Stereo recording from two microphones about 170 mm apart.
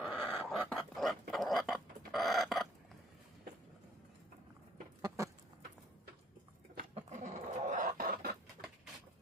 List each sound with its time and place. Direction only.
0.0 s dog: 5° left (ahead or behind)
1.3 s chicken: centre (ahead or behind)
5.0 s chicken: 20° right (ahead or behind)
6.7 s goat: 45° right (ahead or behind)